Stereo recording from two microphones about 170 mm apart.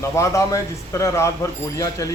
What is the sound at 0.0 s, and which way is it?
A man's voice, 15° left (ahead or behind).